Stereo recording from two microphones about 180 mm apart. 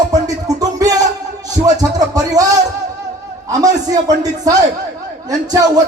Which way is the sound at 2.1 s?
20° right (ahead or behind).